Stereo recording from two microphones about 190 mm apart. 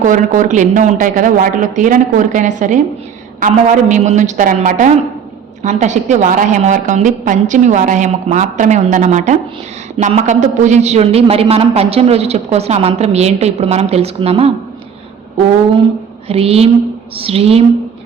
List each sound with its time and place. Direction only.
0.0 s a woman's voice: 40° right (ahead or behind)
16.3 s a woman's voice: 30° right (ahead or behind)